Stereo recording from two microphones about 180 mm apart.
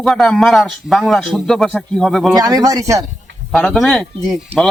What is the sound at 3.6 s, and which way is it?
Speech, 5° left (ahead or behind).